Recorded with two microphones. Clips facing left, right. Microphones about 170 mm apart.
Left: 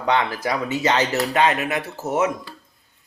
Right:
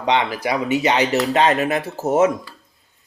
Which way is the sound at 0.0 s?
20° right (ahead or behind).